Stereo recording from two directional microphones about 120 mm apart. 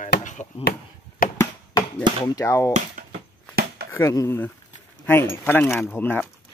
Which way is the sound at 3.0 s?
90° right.